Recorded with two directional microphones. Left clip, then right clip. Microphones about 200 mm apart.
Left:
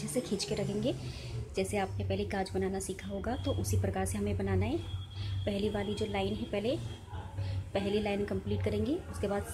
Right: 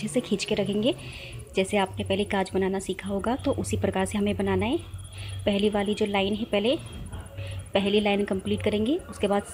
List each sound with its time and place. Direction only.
0.1 s a woman's voice: 20° right (ahead or behind)